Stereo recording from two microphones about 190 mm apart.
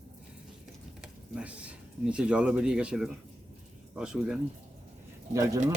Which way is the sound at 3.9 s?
5° right (ahead or behind).